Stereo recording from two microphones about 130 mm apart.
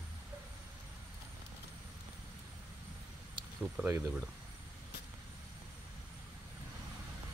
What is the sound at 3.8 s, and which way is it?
Speech, 15° right (ahead or behind).